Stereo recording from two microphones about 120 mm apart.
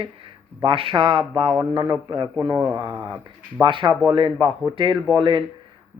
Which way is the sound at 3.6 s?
40° right (ahead or behind).